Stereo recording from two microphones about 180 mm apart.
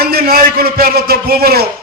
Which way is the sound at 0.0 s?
60° right (ahead or behind).